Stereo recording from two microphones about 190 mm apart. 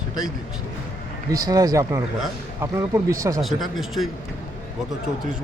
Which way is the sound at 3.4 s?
Centre (ahead or behind).